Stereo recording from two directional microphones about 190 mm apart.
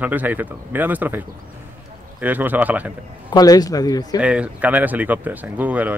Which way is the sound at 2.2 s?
10° right (ahead or behind).